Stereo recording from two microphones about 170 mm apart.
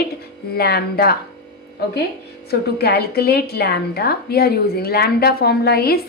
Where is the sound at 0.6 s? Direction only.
65° left (ahead or behind).